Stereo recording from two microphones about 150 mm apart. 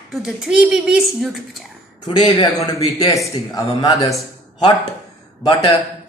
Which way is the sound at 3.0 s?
20° left (ahead or behind).